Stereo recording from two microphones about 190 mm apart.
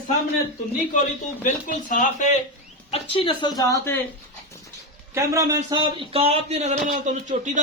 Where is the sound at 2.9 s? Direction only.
25° left (ahead or behind).